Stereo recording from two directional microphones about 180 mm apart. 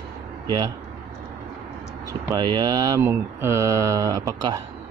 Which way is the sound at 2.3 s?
20° right (ahead or behind).